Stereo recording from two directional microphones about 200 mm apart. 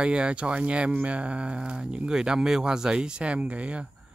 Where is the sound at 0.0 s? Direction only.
5° right (ahead or behind).